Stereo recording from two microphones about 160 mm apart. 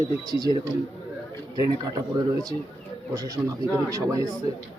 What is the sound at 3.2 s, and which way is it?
A man's voice, 20° right (ahead or behind).